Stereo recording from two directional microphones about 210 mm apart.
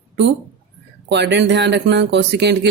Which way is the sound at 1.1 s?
55° right (ahead or behind).